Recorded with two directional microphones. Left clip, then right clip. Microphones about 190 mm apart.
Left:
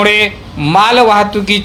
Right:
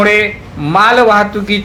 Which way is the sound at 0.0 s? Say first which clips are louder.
Even; 30° left (ahead or behind).